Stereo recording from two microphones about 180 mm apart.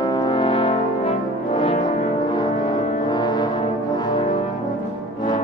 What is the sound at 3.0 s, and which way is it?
Music, 25° left (ahead or behind).